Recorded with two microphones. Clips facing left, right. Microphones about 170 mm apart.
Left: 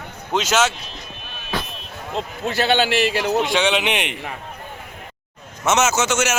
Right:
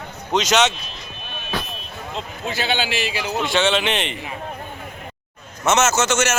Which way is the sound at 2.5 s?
65° left (ahead or behind).